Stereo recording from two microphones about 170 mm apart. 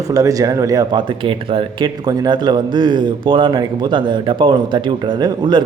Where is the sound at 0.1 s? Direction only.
20° right (ahead or behind).